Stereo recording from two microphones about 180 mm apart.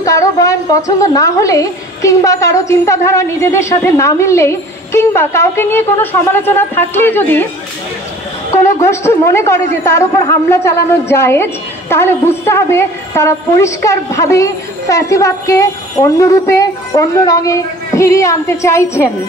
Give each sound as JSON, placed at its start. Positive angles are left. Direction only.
{"t": 0.0, "sound": "a woman's voice", "side_deg": 20}
{"t": 8.8, "sound": "a woman's voice", "side_deg": 15}